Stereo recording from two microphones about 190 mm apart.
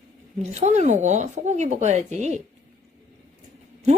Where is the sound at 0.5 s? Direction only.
35° right (ahead or behind).